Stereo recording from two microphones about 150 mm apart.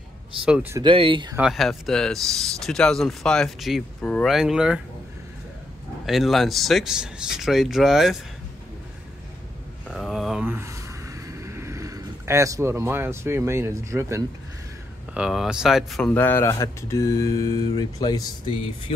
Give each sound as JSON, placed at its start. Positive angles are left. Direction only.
{"t": 0.5, "sound": "speech", "side_deg": -10}
{"t": 0.8, "sound": "speech", "side_deg": -35}
{"t": 1.5, "sound": "speech", "side_deg": 0}
{"t": 6.0, "sound": "speech", "side_deg": 0}
{"t": 9.9, "sound": "a sound", "side_deg": 0}
{"t": 10.4, "sound": "a sound", "side_deg": -15}
{"t": 15.1, "sound": "speech", "side_deg": -5}
{"t": 16.1, "sound": "speech", "side_deg": 15}